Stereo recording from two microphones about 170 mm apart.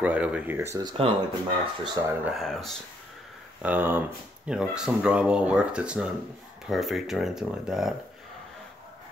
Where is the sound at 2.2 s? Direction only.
Centre (ahead or behind).